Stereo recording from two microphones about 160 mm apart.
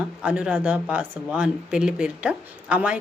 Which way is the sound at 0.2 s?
5° right (ahead or behind).